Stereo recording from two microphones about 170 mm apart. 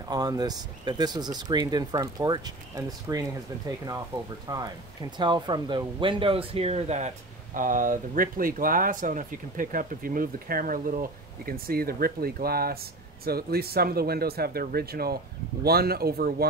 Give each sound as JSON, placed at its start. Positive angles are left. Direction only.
{"t": 0.1, "sound": "speech", "side_deg": -25}
{"t": 7.5, "sound": "speech", "side_deg": -50}